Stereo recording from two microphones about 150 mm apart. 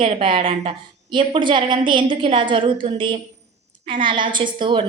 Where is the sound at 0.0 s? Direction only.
35° right (ahead or behind).